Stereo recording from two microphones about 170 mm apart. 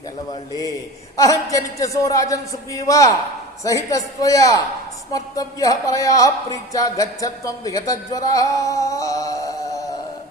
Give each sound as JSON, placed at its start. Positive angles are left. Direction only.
{"t": 1.1, "sound": "speech", "side_deg": 20}